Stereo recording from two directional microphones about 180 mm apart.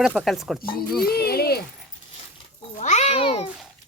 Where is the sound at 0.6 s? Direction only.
55° left (ahead or behind).